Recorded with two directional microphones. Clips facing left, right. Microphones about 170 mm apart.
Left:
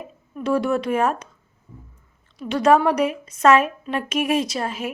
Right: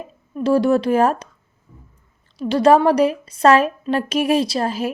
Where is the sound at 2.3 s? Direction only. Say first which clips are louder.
Right 3 dB; 30° right (ahead or behind).